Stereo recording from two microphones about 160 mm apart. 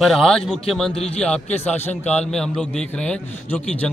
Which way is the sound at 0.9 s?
40° left (ahead or behind).